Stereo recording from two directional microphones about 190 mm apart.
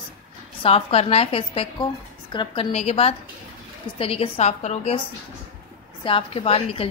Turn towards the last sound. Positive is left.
turn(degrees=30)  # may be behind; listen again after turning